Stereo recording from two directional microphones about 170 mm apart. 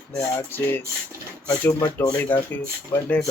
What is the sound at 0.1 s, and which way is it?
Speech, 10° left (ahead or behind).